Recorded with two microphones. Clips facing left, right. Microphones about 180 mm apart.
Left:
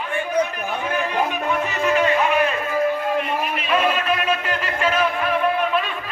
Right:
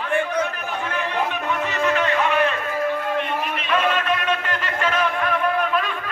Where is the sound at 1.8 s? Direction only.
10° left (ahead or behind).